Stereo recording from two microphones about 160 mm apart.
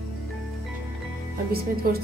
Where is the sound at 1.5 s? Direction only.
70° right (ahead or behind).